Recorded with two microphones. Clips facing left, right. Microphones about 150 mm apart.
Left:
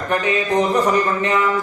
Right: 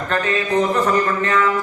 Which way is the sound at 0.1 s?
15° left (ahead or behind).